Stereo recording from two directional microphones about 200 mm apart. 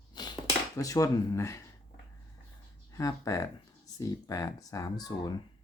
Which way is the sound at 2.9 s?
15° left (ahead or behind).